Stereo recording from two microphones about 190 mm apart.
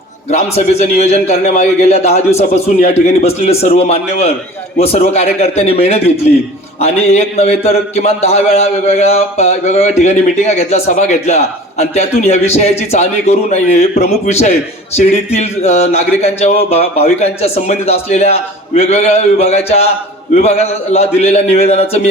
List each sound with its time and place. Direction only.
0.3 s a man's voice: 35° left (ahead or behind)